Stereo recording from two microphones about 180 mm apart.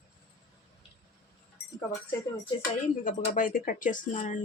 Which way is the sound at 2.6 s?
50° left (ahead or behind).